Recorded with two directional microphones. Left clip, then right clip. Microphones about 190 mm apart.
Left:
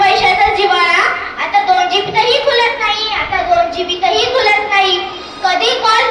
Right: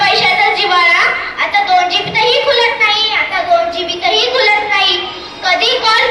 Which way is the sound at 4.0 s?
50° left (ahead or behind).